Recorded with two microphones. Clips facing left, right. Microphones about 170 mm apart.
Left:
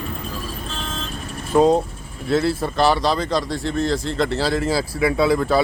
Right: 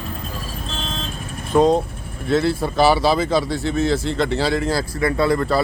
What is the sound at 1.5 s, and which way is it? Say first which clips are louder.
Speech: even; 5° left (ahead or behind).